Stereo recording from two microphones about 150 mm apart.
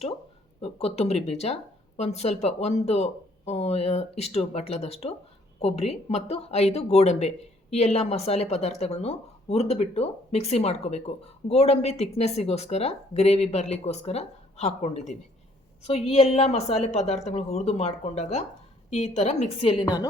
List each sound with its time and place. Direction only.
0.6 s a woman's voice: 45° left (ahead or behind)
19.8 s a woman's voice: 25° left (ahead or behind)